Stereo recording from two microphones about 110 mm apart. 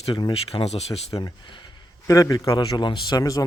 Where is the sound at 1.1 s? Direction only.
40° left (ahead or behind).